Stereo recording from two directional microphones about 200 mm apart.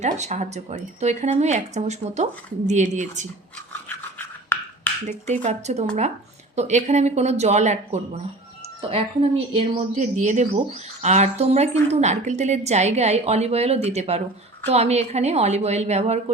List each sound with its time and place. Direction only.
0.0 s speech: 35° right (ahead or behind)
3.7 s a sound: 10° left (ahead or behind)
5.0 s speech: 35° right (ahead or behind)